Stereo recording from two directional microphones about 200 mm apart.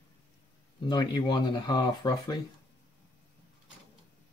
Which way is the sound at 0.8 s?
20° left (ahead or behind).